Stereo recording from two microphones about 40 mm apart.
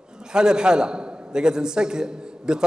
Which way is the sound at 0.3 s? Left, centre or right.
Centre.